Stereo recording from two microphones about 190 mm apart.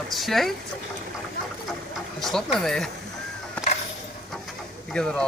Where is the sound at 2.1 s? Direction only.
Centre (ahead or behind).